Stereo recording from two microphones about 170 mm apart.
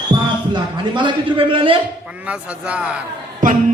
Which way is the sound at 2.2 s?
5° right (ahead or behind).